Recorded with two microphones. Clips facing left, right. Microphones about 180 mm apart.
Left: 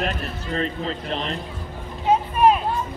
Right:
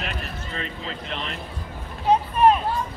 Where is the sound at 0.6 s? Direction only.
35° left (ahead or behind).